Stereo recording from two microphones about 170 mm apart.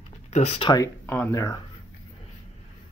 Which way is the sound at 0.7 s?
15° left (ahead or behind).